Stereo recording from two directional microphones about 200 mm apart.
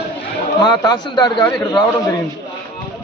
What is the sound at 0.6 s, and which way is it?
Speech, 20° left (ahead or behind).